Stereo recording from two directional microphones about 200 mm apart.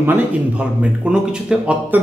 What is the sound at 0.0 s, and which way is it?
A man's voice, 10° right (ahead or behind).